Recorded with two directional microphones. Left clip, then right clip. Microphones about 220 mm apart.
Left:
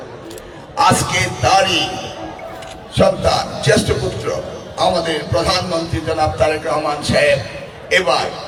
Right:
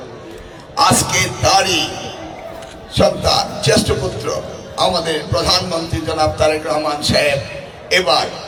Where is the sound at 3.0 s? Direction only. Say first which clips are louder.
Even; 45° right (ahead or behind).